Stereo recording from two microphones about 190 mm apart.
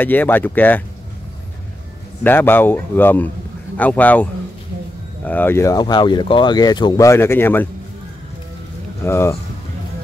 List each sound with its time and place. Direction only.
0.0 s speech: 10° left (ahead or behind)
2.2 s speech: 10° left (ahead or behind)
9.0 s speech: 15° left (ahead or behind)